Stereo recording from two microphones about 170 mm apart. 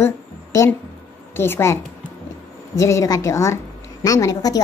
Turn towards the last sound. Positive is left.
turn(degrees=20)  # may be behind; listen again after turning